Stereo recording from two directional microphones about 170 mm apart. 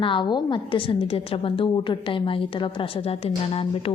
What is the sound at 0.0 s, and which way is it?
A woman's voice, 30° left (ahead or behind).